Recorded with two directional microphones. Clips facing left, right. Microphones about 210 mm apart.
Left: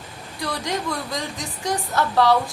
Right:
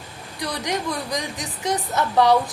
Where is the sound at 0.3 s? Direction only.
20° right (ahead or behind).